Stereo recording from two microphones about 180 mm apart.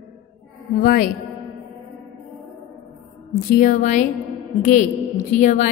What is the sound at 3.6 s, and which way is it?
Speech, 45° left (ahead or behind).